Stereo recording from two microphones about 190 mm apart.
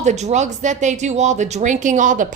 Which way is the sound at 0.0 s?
35° right (ahead or behind).